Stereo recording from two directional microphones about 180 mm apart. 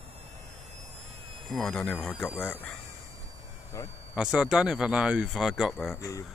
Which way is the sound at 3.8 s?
20° left (ahead or behind).